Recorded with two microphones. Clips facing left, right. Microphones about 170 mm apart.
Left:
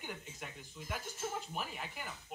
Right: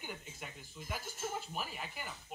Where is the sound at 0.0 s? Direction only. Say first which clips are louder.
Left 1 dB; 5° right (ahead or behind).